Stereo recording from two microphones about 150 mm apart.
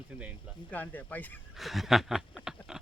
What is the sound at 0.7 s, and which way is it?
Speech, 10° left (ahead or behind).